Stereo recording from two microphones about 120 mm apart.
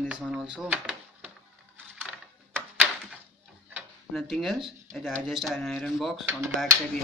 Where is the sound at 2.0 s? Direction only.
10° right (ahead or behind).